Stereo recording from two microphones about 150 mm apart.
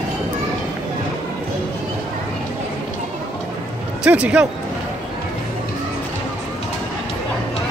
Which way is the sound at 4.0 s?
10° right (ahead or behind).